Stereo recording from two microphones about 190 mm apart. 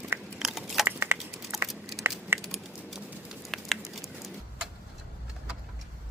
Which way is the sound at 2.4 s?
Centre (ahead or behind).